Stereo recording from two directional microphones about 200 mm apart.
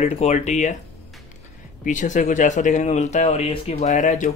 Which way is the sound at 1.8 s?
40° left (ahead or behind).